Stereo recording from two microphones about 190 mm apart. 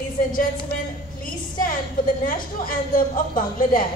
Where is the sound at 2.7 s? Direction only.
45° left (ahead or behind).